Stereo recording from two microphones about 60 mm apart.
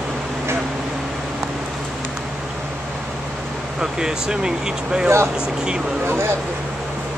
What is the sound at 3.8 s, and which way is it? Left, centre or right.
Speech, centre.